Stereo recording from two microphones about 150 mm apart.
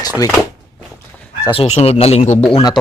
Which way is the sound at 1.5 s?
45° left (ahead or behind).